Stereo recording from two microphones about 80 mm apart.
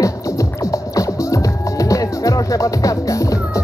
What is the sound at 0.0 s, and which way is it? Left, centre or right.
Music, left.